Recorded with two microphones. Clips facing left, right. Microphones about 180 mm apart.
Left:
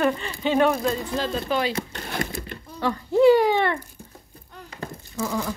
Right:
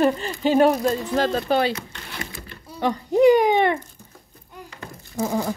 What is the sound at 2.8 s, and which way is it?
Speech, 15° right (ahead or behind).